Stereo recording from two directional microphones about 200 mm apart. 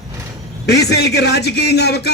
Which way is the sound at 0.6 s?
55° left (ahead or behind).